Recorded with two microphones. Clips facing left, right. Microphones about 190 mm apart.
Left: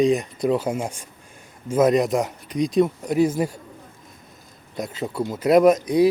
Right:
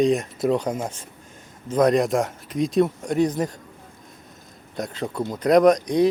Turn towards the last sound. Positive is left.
turn(degrees=5)  # may be behind; listen again after turning